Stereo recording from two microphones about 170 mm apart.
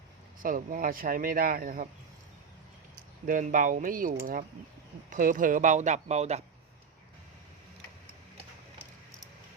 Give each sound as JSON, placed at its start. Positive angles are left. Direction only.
{"t": 0.3, "sound": "speech", "side_deg": -55}
{"t": 3.2, "sound": "speech", "side_deg": -55}
{"t": 5.1, "sound": "speech", "side_deg": -50}